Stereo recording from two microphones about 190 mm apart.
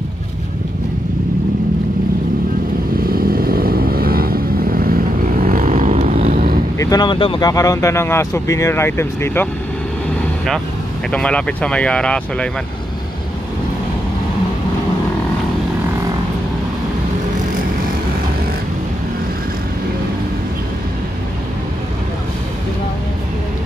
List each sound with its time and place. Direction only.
3.0 s vehicle: 50° right (ahead or behind)
6.8 s speech: 20° left (ahead or behind)
11.1 s speech: 5° left (ahead or behind)